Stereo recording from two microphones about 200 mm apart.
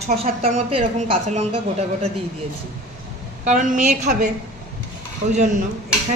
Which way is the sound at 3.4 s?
40° right (ahead or behind).